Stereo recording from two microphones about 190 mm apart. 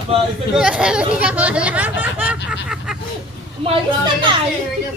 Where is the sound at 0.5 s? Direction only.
5° right (ahead or behind).